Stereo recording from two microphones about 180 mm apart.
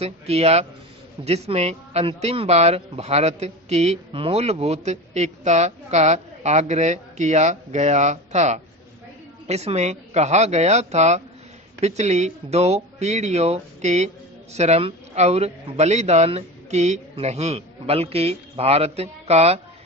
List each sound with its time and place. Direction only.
0.0 s speech: 35° right (ahead or behind)